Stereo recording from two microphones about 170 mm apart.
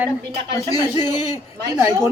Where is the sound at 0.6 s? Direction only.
20° left (ahead or behind).